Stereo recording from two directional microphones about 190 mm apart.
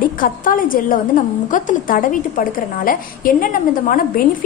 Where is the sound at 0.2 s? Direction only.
45° left (ahead or behind).